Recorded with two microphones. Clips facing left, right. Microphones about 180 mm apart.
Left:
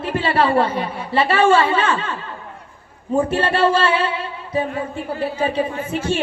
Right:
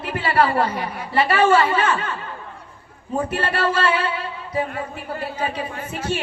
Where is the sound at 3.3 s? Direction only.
25° left (ahead or behind).